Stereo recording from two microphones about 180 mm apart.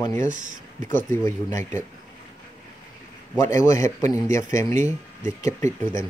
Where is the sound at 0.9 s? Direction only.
15° left (ahead or behind).